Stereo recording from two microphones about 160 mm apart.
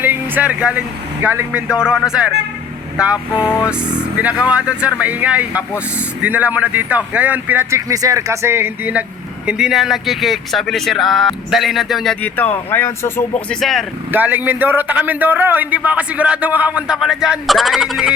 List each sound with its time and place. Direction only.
0.0 s a man's voice: 10° right (ahead or behind)
12.2 s speech: 10° left (ahead or behind)
13.5 s speech: centre (ahead or behind)
14.1 s a man's voice: 10° right (ahead or behind)